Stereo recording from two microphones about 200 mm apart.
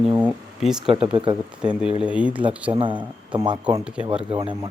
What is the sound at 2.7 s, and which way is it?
Speech, 25° right (ahead or behind).